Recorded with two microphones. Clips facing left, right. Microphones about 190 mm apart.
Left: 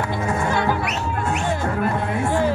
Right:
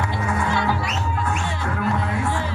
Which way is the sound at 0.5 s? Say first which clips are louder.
Left 2 dB; 50° left (ahead or behind).